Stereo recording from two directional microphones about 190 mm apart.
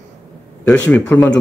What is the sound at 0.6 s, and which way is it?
Speech, 10° left (ahead or behind).